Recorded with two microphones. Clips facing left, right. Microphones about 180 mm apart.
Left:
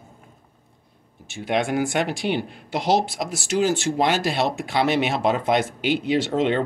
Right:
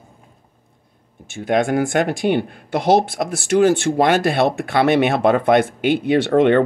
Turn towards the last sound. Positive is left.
turn(degrees=-60)  # may be behind; listen again after turning